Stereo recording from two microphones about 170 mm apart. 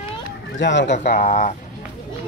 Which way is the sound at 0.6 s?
90° left.